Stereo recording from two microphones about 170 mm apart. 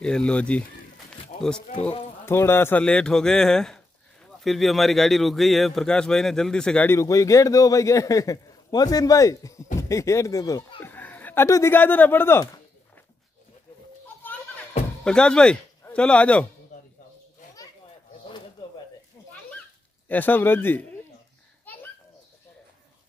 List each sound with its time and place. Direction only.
0.0 s speech: 5° left (ahead or behind)
1.7 s speech: 35° left (ahead or behind)
2.2 s a man's voice: 15° left (ahead or behind)
14.2 s music: 10° left (ahead or behind)
15.0 s speech: 5° left (ahead or behind)
20.1 s speech: 10° left (ahead or behind)